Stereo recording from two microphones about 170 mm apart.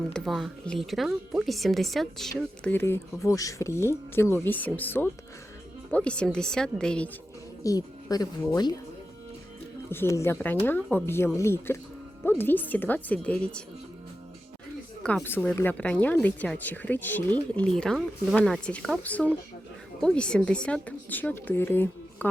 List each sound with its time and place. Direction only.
0.1 s speech: centre (ahead or behind)
2.6 s a woman's voice: 15° left (ahead or behind)
7.6 s speech: 20° left (ahead or behind)
9.9 s a woman's voice: 15° left (ahead or behind)
15.0 s a woman's voice: 10° left (ahead or behind)